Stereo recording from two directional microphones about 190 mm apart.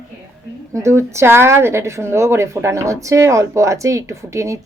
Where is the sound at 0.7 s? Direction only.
15° right (ahead or behind).